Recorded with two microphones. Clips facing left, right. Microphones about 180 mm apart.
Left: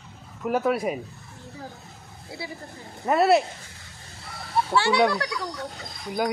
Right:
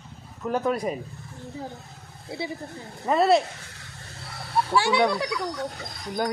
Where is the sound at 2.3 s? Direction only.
25° right (ahead or behind).